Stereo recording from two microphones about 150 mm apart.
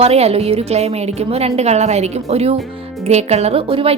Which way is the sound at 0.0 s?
45° right (ahead or behind).